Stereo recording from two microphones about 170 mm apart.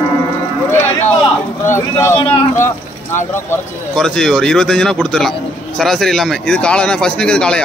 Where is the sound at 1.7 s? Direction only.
15° left (ahead or behind).